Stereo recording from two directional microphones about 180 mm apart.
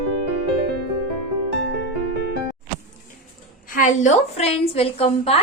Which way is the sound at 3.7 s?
45° left (ahead or behind).